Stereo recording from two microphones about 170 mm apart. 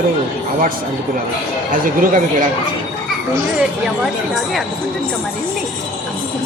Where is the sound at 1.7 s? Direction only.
55° right (ahead or behind).